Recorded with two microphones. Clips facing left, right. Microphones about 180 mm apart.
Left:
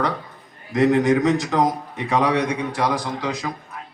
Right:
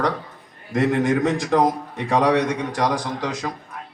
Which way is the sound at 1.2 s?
50° right (ahead or behind).